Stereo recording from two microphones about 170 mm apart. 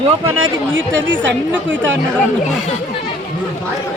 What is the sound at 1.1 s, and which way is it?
Speech, 90° right.